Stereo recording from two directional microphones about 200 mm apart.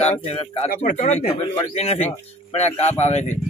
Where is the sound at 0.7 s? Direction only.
40° left (ahead or behind).